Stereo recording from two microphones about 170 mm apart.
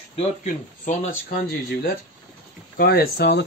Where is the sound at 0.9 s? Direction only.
50° left (ahead or behind).